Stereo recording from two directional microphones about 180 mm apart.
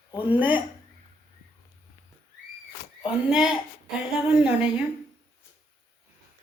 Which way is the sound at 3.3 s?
5° right (ahead or behind).